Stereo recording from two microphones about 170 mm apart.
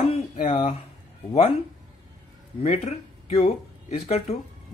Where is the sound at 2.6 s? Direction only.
35° left (ahead or behind).